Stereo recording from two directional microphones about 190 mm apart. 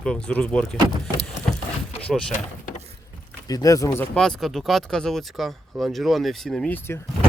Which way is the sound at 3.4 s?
20° left (ahead or behind).